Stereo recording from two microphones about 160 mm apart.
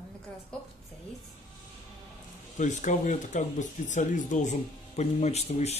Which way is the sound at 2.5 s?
50° left (ahead or behind).